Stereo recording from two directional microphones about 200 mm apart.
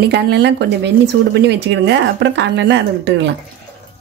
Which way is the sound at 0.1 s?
60° right (ahead or behind).